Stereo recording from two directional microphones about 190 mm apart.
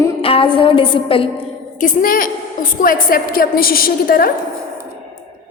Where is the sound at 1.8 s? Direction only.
45° left (ahead or behind).